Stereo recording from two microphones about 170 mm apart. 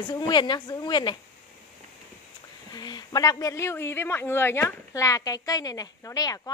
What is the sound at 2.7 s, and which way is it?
Speech, 25° left (ahead or behind).